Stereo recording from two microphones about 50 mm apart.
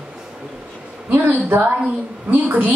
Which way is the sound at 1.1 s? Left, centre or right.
Right.